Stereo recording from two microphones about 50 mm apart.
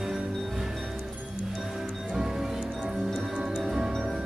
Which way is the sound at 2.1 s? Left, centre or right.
Centre.